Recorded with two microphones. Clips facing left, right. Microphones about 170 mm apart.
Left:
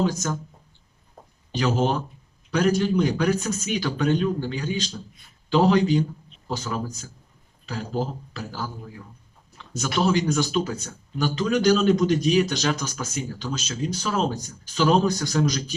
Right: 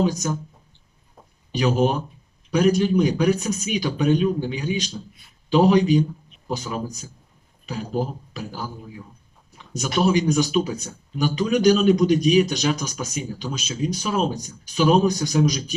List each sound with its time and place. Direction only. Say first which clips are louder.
0.0 s speech: right 2 dB; 15° right (ahead or behind)
1.5 s speech: right 3 dB; 15° right (ahead or behind)
9.7 s speech: right 2 dB; 15° right (ahead or behind)